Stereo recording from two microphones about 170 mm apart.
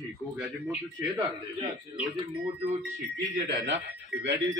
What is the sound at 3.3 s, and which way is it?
Speech, 75° right (ahead or behind).